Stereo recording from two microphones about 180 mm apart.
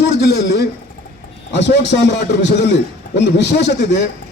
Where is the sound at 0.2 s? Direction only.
70° left (ahead or behind).